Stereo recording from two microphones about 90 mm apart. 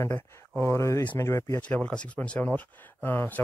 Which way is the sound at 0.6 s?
30° left (ahead or behind).